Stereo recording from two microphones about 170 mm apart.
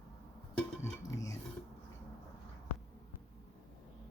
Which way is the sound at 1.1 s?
20° left (ahead or behind).